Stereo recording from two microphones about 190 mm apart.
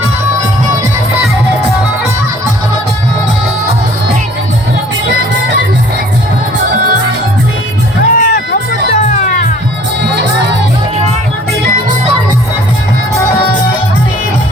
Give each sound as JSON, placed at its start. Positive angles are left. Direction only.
{"t": 8.1, "sound": "music", "side_deg": 45}